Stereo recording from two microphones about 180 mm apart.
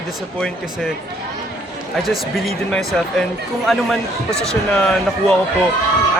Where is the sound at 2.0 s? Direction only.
Centre (ahead or behind).